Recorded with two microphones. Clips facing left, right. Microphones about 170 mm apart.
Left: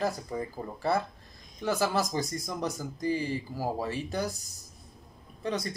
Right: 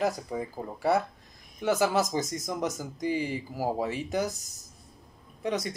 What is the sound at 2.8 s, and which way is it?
Speech, 10° right (ahead or behind).